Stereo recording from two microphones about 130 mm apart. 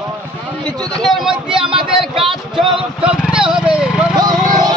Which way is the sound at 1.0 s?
Centre (ahead or behind).